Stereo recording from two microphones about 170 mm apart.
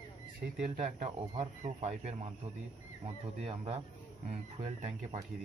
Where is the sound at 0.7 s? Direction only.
45° right (ahead or behind).